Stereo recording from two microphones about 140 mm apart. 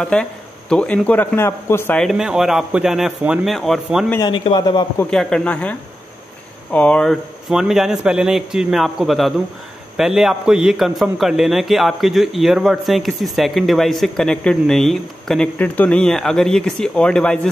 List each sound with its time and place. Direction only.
0.0 s a man's voice: 5° left (ahead or behind)
2.0 s a man's voice: centre (ahead or behind)
4.2 s a man's voice: 35° left (ahead or behind)
5.1 s a man's voice: 5° left (ahead or behind)